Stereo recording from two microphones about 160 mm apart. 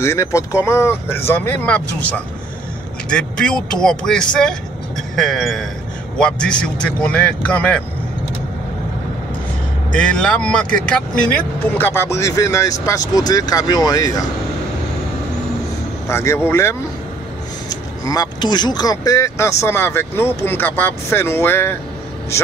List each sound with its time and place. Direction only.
0.0 s speech: 20° left (ahead or behind)
9.9 s speech: 5° left (ahead or behind); by 14.2 s 25° left (ahead or behind)
16.1 s speech: 15° left (ahead or behind)